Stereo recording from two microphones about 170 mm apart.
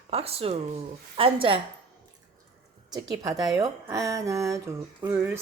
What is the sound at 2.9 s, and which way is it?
Speech, 20° right (ahead or behind).